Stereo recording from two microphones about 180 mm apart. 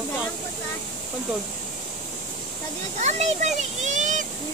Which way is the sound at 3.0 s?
40° right (ahead or behind).